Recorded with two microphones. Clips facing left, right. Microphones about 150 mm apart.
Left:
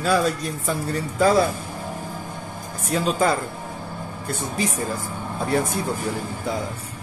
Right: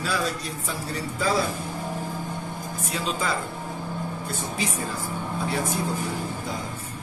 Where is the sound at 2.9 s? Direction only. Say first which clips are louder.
Left 8 dB; 45° left (ahead or behind).